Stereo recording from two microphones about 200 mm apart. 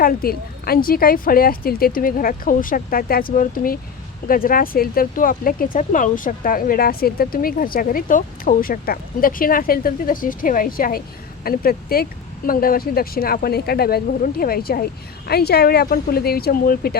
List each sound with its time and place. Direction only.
0.0 s speech: 50° left (ahead or behind)